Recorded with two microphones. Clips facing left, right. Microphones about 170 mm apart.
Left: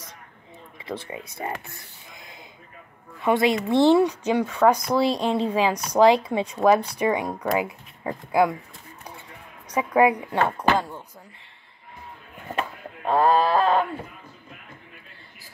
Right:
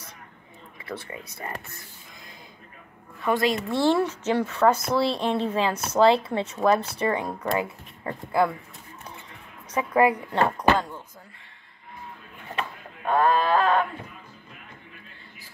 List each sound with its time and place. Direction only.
0.8 s speech: 20° left (ahead or behind)
3.3 s speech: 20° left (ahead or behind)
9.7 s speech: 10° left (ahead or behind)
13.0 s a sound: 30° left (ahead or behind)